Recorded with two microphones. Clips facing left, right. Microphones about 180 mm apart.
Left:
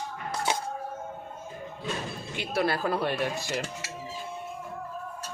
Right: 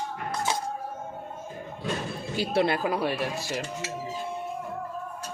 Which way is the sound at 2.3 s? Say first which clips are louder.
Right 3 dB; 30° right (ahead or behind).